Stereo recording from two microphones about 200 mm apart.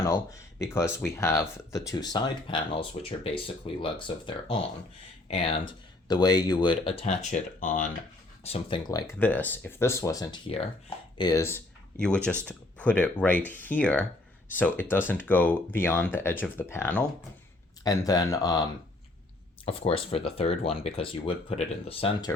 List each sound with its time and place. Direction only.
0.0 s speech: 15° left (ahead or behind); by 8.8 s 30° left (ahead or behind)
9.1 s speech: 10° left (ahead or behind)
19.6 s speech: 30° left (ahead or behind)